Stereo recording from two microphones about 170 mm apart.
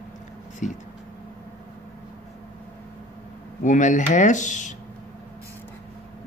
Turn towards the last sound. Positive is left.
turn(degrees=45)  # may be behind; listen again after turning